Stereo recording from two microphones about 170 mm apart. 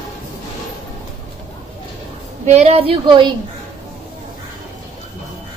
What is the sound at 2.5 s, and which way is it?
Speech, 40° right (ahead or behind).